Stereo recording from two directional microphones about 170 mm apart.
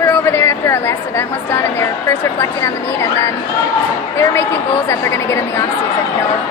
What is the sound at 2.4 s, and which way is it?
A woman's voice, 15° left (ahead or behind).